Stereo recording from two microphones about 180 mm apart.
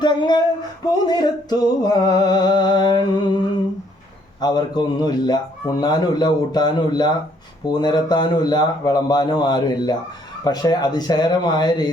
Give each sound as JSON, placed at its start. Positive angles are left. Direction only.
{"t": 0.0, "sound": "speech", "side_deg": 25}
{"t": 0.9, "sound": "music", "side_deg": 25}
{"t": 4.4, "sound": "a man's voice", "side_deg": 20}